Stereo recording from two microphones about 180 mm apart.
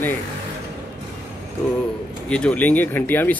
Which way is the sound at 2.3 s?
5° left (ahead or behind).